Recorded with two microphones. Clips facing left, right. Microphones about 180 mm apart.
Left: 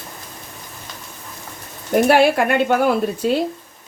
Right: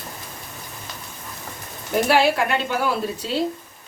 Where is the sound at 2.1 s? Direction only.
55° left (ahead or behind).